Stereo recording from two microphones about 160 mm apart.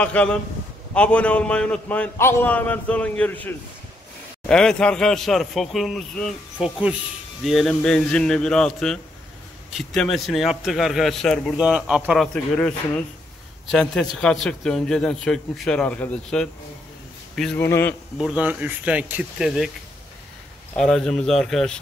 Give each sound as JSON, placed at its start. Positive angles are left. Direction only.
{"t": 0.0, "sound": "a man's voice", "side_deg": 5}
{"t": 12.5, "sound": "a man's voice", "side_deg": 10}
{"t": 17.6, "sound": "a man's voice", "side_deg": 15}
{"t": 18.1, "sound": "speech", "side_deg": -5}
{"t": 20.7, "sound": "speech", "side_deg": 5}